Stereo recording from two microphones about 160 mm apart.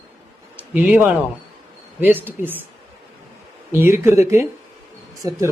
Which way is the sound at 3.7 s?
15° right (ahead or behind).